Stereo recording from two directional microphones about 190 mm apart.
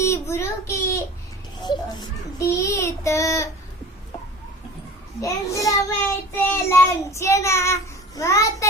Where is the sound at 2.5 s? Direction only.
15° left (ahead or behind).